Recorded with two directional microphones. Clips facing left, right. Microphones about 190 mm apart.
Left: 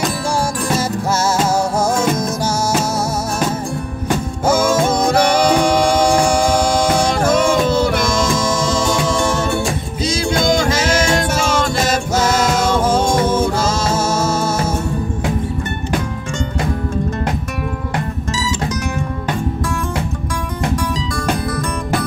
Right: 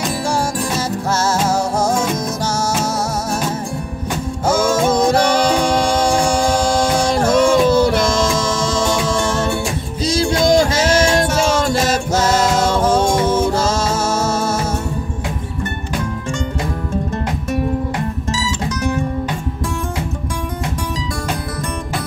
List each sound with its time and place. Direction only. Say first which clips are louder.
7.1 s music: right 1 dB; 35° right (ahead or behind)
10.0 s music: right 2 dB; 35° right (ahead or behind)
12.3 s music: right 1 dB; 30° right (ahead or behind)
13.7 s music: even; 10° left (ahead or behind)